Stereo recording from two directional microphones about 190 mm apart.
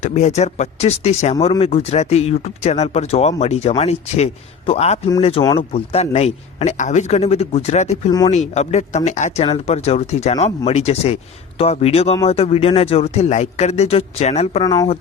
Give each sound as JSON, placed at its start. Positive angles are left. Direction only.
{"t": 0.0, "sound": "speech", "side_deg": 35}
{"t": 14.6, "sound": "speech", "side_deg": 20}